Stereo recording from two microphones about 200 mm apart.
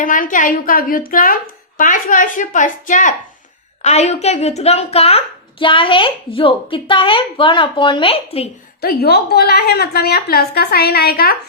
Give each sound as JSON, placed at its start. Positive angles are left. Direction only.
{"t": 0.0, "sound": "a woman's voice", "side_deg": 40}
{"t": 8.8, "sound": "a woman's voice", "side_deg": 50}